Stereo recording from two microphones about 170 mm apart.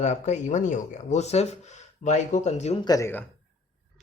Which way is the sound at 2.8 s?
20° left (ahead or behind).